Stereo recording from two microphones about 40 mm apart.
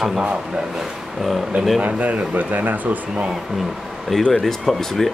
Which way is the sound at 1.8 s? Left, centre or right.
Right.